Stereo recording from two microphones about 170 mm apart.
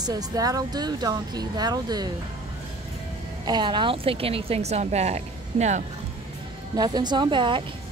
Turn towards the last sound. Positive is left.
turn(degrees=-30)  # may be behind; listen again after turning